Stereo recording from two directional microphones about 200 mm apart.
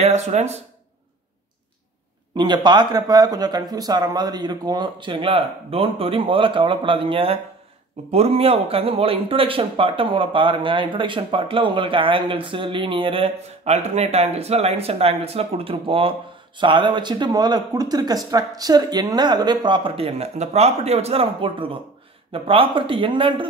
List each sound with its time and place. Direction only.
0.0 s speech: 35° right (ahead or behind)
2.3 s speech: 20° right (ahead or behind)